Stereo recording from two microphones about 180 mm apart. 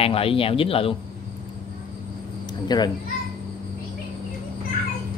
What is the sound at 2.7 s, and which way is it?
Speech, 25° left (ahead or behind).